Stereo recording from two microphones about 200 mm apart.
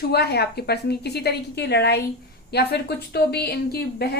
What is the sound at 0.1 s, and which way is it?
A woman's voice, 55° left (ahead or behind).